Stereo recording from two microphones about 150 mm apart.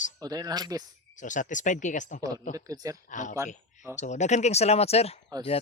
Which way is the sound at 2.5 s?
25° right (ahead or behind).